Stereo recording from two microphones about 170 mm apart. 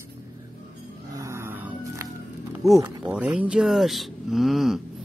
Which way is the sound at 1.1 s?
15° right (ahead or behind).